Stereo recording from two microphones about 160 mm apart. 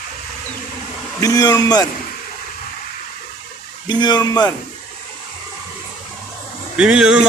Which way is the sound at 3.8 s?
25° left (ahead or behind).